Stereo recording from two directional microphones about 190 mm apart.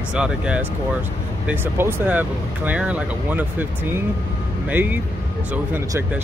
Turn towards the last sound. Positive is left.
turn(degrees=-10)  # may be behind; listen again after turning